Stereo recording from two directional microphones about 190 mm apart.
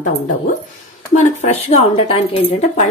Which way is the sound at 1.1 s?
35° left (ahead or behind).